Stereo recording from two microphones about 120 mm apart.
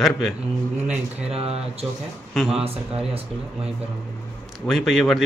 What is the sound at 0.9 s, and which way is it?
Speech, 60° right (ahead or behind).